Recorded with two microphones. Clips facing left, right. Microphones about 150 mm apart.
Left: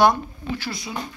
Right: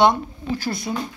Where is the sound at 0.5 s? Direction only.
45° right (ahead or behind).